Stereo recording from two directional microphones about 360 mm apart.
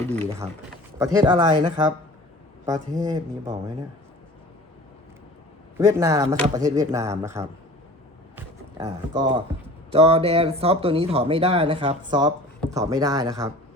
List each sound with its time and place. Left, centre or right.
0.9 s speech: centre
5.7 s speech: centre